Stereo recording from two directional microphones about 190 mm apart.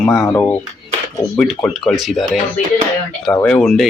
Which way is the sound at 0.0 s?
15° left (ahead or behind).